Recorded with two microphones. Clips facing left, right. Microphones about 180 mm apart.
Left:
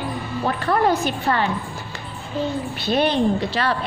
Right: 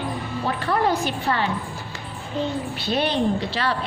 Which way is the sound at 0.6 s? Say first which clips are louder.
Left 3 dB; 50° left (ahead or behind).